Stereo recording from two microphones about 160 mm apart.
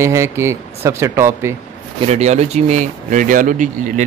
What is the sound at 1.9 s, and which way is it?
Speech, 45° right (ahead or behind).